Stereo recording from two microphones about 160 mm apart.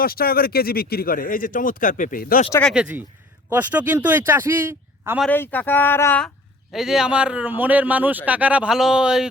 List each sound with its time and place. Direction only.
0.0 s speech: 70° left (ahead or behind)
2.7 s speech: 5° right (ahead or behind)
5.3 s speech: 10° left (ahead or behind)
6.7 s speech: 5° right (ahead or behind)